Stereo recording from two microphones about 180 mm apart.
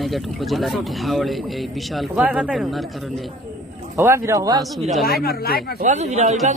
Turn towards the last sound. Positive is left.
turn(degrees=-40)  # may be behind; listen again after turning